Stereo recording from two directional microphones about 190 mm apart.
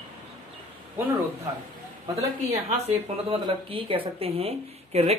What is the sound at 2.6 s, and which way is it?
A man's voice, 30° right (ahead or behind).